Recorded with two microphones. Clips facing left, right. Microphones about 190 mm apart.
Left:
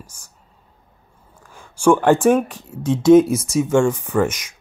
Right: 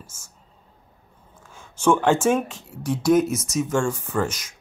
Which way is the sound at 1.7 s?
10° left (ahead or behind).